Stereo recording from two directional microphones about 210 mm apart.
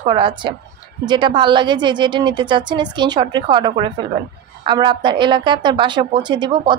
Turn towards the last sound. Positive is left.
turn(degrees=-20)  # may be behind; listen again after turning